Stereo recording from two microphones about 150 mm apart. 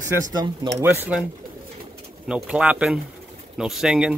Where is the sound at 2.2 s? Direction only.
5° right (ahead or behind).